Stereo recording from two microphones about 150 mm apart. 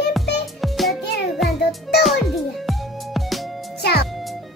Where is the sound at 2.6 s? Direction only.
Centre (ahead or behind).